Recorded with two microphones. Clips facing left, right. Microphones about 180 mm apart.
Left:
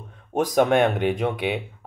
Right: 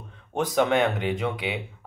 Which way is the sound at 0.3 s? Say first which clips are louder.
Left 3 dB; 20° left (ahead or behind).